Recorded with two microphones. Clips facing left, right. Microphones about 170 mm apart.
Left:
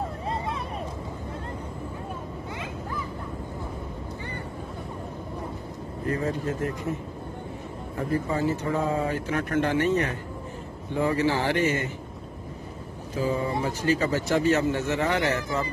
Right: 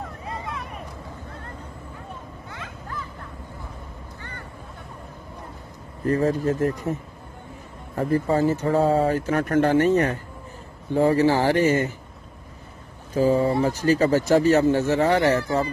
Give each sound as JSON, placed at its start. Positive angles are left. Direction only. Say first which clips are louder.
{"t": 0.3, "sound": "a sound", "louder": "left 1 dB", "side_deg": 30}
{"t": 6.0, "sound": "speech", "louder": "right 7 dB", "side_deg": -40}
{"t": 8.3, "sound": "speech", "louder": "right 5 dB", "side_deg": -40}
{"t": 13.1, "sound": "speech", "louder": "right 7 dB", "side_deg": -40}